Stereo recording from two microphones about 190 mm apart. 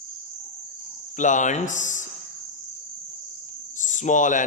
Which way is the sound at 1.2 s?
40° left (ahead or behind).